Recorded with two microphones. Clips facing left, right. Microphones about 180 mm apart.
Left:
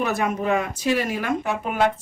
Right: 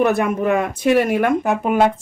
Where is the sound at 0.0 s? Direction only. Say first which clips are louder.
Right 6 dB; 55° right (ahead or behind).